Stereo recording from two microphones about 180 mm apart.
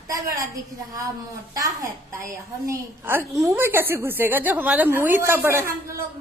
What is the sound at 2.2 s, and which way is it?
A woman's voice, 15° right (ahead or behind).